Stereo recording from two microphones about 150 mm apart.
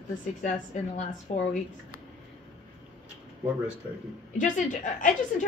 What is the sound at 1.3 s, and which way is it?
Speech, 50° left (ahead or behind).